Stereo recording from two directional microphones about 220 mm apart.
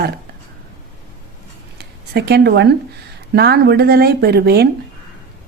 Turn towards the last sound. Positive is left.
turn(degrees=-45)  # may be behind; listen again after turning